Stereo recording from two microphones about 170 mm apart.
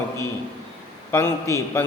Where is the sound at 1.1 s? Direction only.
15° left (ahead or behind).